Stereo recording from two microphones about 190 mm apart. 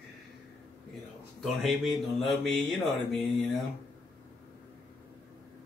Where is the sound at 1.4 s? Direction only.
Centre (ahead or behind).